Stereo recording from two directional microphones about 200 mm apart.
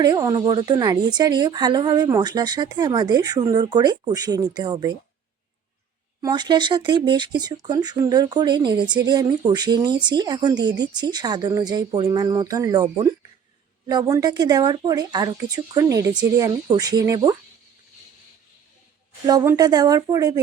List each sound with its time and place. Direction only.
0.0 s speech: 20° right (ahead or behind)
6.2 s speech: 20° right (ahead or behind)
19.3 s speech: 20° right (ahead or behind)